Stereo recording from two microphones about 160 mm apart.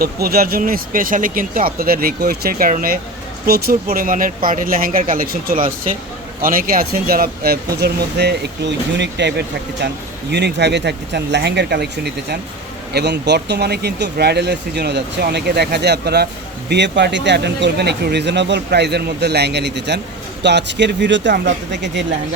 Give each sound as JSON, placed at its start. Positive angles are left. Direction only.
{"t": 0.0, "sound": "speech", "side_deg": -75}
{"t": 3.4, "sound": "speech", "side_deg": -70}